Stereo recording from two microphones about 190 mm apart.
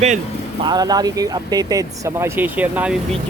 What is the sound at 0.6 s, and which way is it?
Speech, 20° right (ahead or behind).